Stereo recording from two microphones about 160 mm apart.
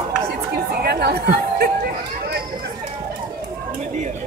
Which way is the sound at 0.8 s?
85° right.